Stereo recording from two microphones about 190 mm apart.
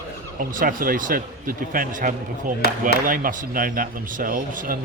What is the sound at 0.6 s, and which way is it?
Speech, 45° right (ahead or behind).